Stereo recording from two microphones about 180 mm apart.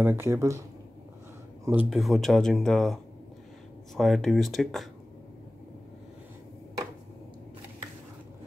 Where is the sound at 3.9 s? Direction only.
Centre (ahead or behind).